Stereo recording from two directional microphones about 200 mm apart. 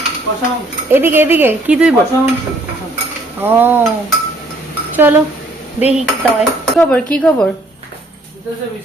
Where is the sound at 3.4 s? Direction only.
10° right (ahead or behind).